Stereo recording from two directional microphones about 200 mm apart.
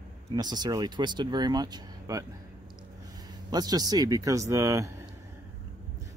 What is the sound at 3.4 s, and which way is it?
Speech, 20° right (ahead or behind).